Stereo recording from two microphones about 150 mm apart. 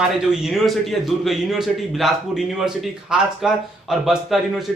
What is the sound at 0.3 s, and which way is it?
A man's voice, centre (ahead or behind).